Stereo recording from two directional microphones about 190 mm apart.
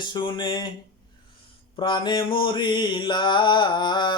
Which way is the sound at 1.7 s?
25° left (ahead or behind).